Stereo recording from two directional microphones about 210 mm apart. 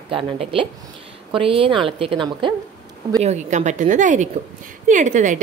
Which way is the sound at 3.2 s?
35° right (ahead or behind).